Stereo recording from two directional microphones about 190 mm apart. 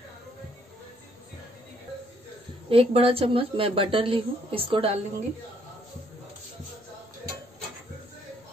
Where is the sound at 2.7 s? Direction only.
30° right (ahead or behind).